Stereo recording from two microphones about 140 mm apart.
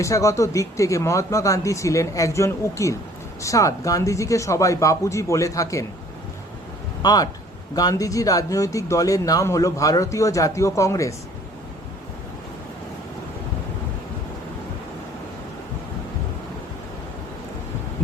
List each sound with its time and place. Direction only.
0.0 s speech: 20° left (ahead or behind)
7.0 s speech: 30° left (ahead or behind)